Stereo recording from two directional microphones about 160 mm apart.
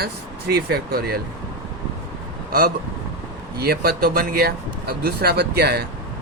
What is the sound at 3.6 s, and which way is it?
Speech, 75° right (ahead or behind).